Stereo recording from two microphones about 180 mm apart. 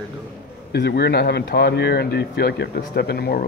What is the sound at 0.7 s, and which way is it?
Speech, 65° left (ahead or behind).